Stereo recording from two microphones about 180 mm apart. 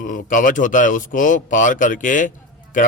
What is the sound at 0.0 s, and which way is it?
A man's voice, 45° left (ahead or behind).